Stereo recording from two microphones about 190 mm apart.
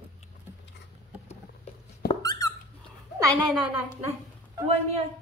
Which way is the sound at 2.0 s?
20° left (ahead or behind).